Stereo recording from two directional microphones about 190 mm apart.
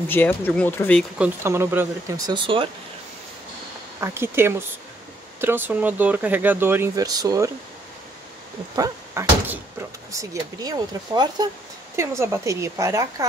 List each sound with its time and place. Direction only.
0.1 s speech: 10° left (ahead or behind)
1.1 s speech: 10° right (ahead or behind); by 2.7 s 25° right (ahead or behind)
4.0 s speech: 15° right (ahead or behind)
8.7 s speech: 15° right (ahead or behind)